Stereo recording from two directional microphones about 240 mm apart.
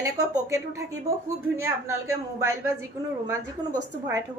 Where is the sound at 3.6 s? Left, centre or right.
Centre.